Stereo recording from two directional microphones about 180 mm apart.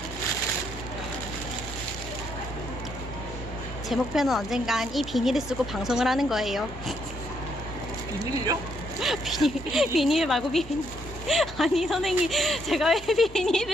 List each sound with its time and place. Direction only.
3.8 s a woman's voice: centre (ahead or behind)
8.2 s speech: 20° right (ahead or behind)
9.0 s a woman's voice: centre (ahead or behind)